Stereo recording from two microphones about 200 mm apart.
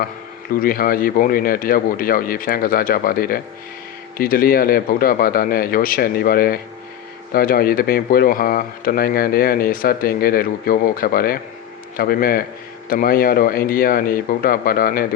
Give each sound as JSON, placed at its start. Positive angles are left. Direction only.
{"t": 0.6, "sound": "speech", "side_deg": 45}